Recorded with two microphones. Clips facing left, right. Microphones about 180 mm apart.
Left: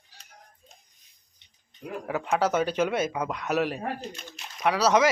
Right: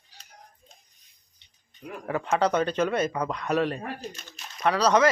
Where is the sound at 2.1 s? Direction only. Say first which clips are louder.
Right 1 dB; 5° left (ahead or behind).